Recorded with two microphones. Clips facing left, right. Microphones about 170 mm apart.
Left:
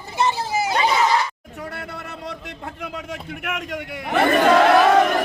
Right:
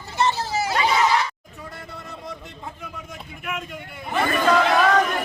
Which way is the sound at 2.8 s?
70° left (ahead or behind).